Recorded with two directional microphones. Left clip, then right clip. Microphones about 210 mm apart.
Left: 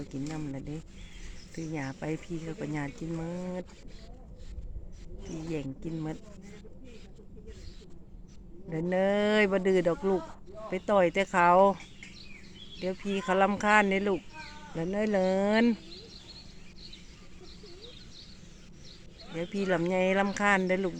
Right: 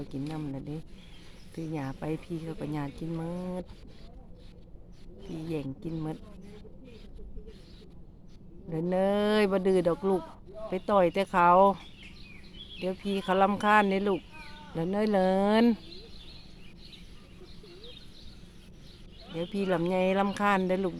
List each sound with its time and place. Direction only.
0.3 s speech: 5° right (ahead or behind)
5.5 s speech: 10° right (ahead or behind)
8.7 s speech: 10° right (ahead or behind)
13.2 s speech: 10° right (ahead or behind)
19.6 s speech: 5° right (ahead or behind)